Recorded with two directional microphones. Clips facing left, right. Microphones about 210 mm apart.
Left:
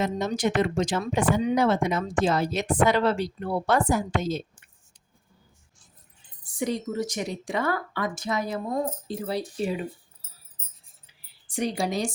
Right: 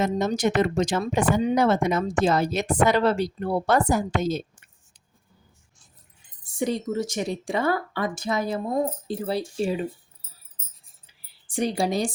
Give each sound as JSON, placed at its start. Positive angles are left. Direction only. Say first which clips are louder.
{"t": 0.0, "sound": "speech", "louder": "right 3 dB", "side_deg": -45}
{"t": 6.4, "sound": "a woman's voice", "louder": "right 2 dB", "side_deg": -25}
{"t": 11.4, "sound": "a woman's voice", "louder": "right 3 dB", "side_deg": -30}